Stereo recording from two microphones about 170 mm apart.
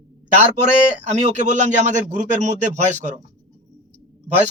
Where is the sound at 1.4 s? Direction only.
45° right (ahead or behind).